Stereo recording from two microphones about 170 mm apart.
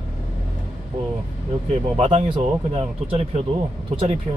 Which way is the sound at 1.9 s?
35° right (ahead or behind).